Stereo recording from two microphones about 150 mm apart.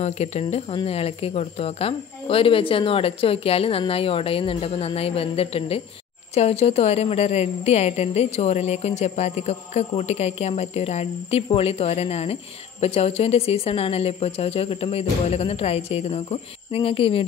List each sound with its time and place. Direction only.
0.0 s a woman's voice: 45° left (ahead or behind)